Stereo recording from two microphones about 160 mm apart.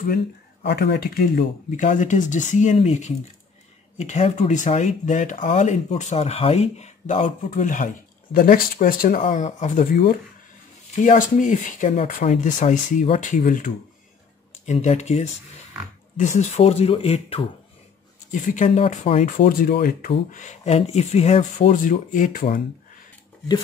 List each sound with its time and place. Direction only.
0.0 s speech: 65° left (ahead or behind)
9.2 s speech: 45° left (ahead or behind)
14.7 s speech: 45° left (ahead or behind)
18.3 s speech: 50° left (ahead or behind)
20.1 s speech: 50° left (ahead or behind)
21.6 s speech: 55° left (ahead or behind)